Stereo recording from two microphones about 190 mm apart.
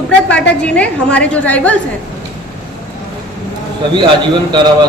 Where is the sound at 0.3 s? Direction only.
5° left (ahead or behind).